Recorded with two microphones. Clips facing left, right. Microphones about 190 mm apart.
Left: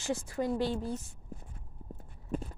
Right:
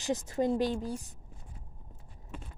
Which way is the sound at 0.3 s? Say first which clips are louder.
Right 3 dB; 20° right (ahead or behind).